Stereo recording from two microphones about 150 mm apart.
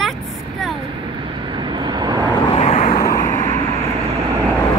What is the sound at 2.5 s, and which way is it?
Vehicle, 45° left (ahead or behind).